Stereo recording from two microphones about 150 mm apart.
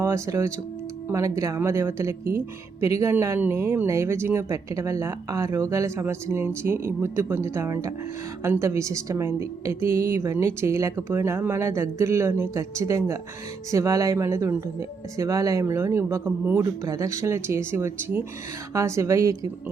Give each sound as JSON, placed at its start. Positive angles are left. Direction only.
{"t": 0.0, "sound": "a woman's voice", "side_deg": -20}